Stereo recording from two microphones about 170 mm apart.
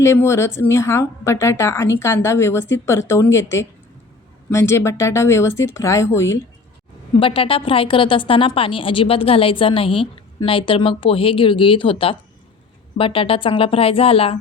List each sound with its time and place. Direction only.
0.0 s a woman's voice: 15° left (ahead or behind)
7.2 s a woman's voice: 30° left (ahead or behind)